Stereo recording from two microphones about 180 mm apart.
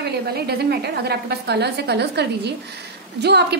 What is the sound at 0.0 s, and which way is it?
A woman's voice, 60° right (ahead or behind).